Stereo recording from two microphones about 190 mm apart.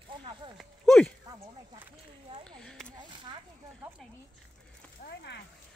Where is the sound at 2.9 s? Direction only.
25° right (ahead or behind).